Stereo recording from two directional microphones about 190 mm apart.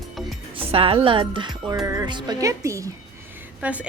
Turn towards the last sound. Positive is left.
turn(degrees=-5)  # may be behind; listen again after turning